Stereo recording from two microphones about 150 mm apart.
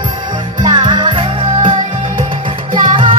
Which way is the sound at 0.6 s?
30° right (ahead or behind).